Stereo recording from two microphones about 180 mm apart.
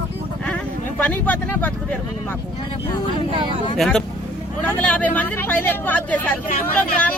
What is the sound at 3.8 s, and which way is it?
Speech, 5° left (ahead or behind).